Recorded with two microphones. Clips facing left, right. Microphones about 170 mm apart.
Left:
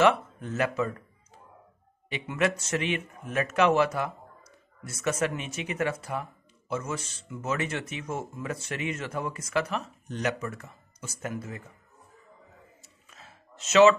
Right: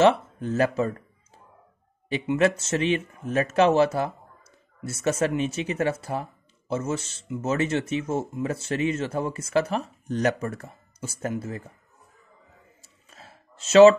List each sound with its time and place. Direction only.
0.0 s speech: 30° right (ahead or behind)
2.3 s speech: 30° right (ahead or behind)
13.1 s a sound: 35° right (ahead or behind)